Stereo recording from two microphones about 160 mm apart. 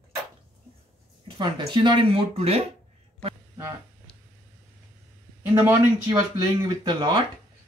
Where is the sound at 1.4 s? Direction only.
30° right (ahead or behind).